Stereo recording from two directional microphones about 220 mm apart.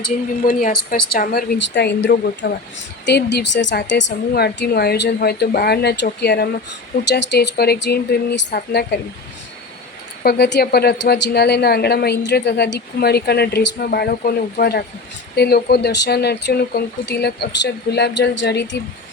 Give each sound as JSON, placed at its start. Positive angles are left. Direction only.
{"t": 0.4, "sound": "a woman's voice", "side_deg": 40}
{"t": 10.2, "sound": "a woman's voice", "side_deg": 50}